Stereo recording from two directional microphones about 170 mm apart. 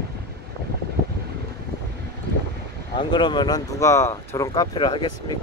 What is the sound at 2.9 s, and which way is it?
Speech, 30° left (ahead or behind).